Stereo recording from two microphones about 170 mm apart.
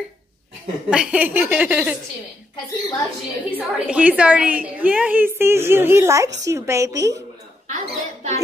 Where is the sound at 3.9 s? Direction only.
10° right (ahead or behind).